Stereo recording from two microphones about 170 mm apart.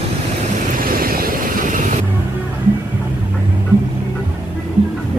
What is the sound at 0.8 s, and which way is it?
Vehicle, 60° right (ahead or behind).